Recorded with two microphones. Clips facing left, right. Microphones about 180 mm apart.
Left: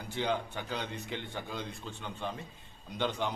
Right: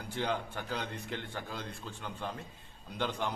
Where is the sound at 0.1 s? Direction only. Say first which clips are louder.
Left 2 dB; centre (ahead or behind).